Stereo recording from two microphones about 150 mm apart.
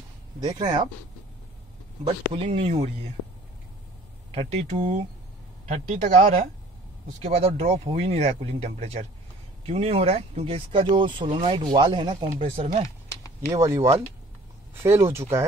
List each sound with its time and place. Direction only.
0.4 s speech: 25° right (ahead or behind)
2.0 s speech: 40° right (ahead or behind)
4.3 s speech: 45° right (ahead or behind)
12.8 s a sound: 20° left (ahead or behind)
13.5 s speech: 20° right (ahead or behind)